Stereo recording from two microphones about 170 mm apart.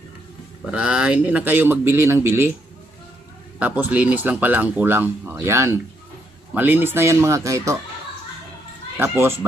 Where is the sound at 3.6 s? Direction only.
10° right (ahead or behind).